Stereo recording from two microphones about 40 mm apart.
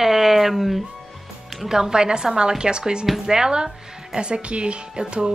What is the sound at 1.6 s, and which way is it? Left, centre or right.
A woman's voice, centre.